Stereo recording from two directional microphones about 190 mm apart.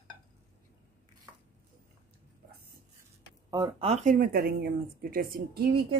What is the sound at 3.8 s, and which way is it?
Speech, 40° right (ahead or behind).